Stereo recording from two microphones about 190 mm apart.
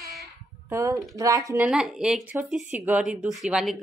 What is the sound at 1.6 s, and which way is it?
Speech, centre (ahead or behind).